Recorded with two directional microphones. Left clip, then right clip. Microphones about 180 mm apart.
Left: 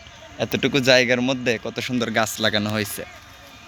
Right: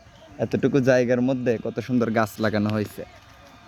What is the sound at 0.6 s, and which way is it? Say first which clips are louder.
Speech: even; 45° right (ahead or behind).